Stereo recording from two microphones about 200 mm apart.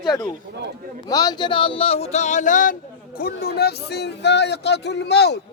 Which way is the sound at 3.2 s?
50° left (ahead or behind).